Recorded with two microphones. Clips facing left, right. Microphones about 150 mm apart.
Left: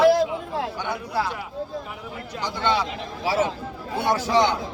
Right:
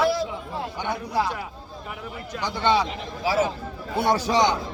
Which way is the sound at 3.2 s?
30° left (ahead or behind).